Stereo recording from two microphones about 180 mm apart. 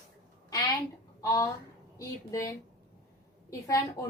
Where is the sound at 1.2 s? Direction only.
20° left (ahead or behind).